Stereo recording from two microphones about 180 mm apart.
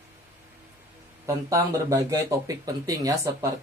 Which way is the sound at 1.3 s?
15° right (ahead or behind).